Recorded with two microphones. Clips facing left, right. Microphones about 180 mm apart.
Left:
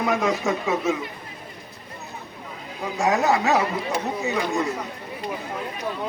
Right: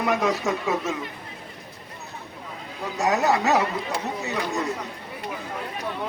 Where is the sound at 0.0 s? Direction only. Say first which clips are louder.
Left 1 dB; centre (ahead or behind).